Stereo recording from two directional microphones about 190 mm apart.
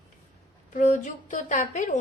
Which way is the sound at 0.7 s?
40° left (ahead or behind).